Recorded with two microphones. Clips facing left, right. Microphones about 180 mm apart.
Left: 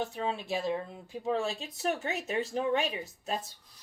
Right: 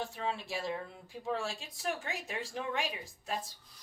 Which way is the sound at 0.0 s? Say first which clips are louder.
Left 4 dB; 20° left (ahead or behind).